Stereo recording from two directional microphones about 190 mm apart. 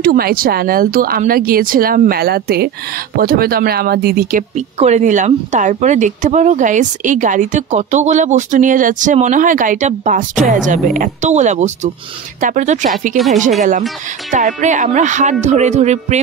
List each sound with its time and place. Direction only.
0.0 s speech: 50° right (ahead or behind)